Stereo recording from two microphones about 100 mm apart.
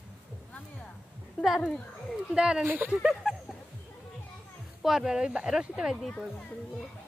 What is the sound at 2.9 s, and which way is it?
Speech, 5° right (ahead or behind).